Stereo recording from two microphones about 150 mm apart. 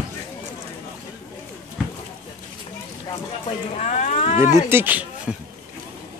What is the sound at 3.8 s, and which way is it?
Speech, 55° left (ahead or behind).